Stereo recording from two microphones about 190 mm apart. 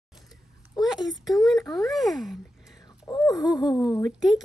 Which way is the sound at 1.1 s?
Centre (ahead or behind).